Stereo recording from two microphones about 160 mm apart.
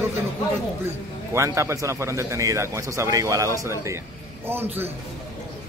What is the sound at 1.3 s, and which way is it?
A man's voice, 15° right (ahead or behind).